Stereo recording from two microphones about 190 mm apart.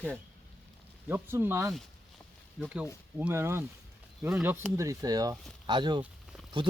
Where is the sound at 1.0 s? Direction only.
10° right (ahead or behind).